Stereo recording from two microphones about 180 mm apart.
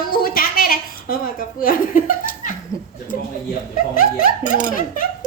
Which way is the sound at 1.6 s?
50° left (ahead or behind).